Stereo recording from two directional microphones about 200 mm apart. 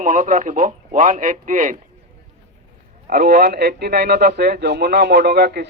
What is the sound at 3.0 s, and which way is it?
Speech, 45° right (ahead or behind).